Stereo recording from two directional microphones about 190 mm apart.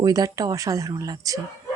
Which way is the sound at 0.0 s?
20° right (ahead or behind).